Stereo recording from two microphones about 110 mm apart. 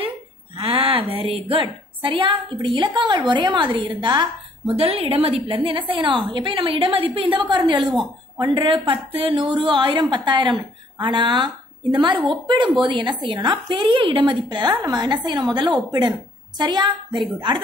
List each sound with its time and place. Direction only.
0.6 s a woman's voice: 55° right (ahead or behind)
4.6 s a woman's voice: 60° right (ahead or behind); by 17.2 s 40° right (ahead or behind)